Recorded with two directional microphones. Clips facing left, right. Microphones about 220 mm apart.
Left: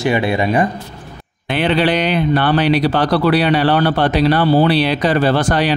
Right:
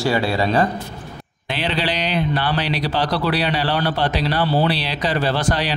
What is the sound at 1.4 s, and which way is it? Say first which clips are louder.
Speech: left 8 dB; 55° left (ahead or behind).